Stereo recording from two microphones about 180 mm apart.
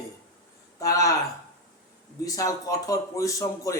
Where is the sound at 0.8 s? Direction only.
20° left (ahead or behind).